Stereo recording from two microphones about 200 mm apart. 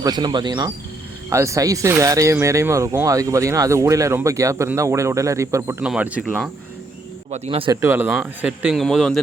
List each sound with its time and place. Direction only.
0.0 s speech: 20° right (ahead or behind)
7.3 s speech: 35° right (ahead or behind)
7.7 s speech: 10° right (ahead or behind)